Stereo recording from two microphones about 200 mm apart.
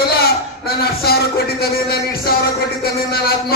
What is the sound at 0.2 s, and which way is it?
A man's voice, 50° left (ahead or behind).